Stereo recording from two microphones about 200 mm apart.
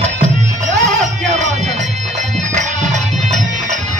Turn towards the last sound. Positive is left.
turn(degrees=-35)  # may be behind; listen again after turning